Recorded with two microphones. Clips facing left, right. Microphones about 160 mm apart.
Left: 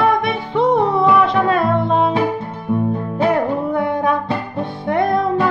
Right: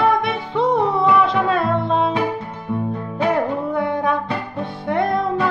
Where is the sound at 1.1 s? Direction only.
Centre (ahead or behind).